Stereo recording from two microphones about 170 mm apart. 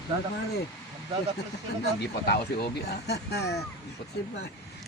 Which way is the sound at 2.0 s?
70° left (ahead or behind).